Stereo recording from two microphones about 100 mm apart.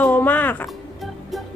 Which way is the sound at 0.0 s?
15° left (ahead or behind).